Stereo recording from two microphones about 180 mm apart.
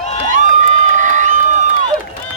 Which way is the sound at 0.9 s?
45° right (ahead or behind).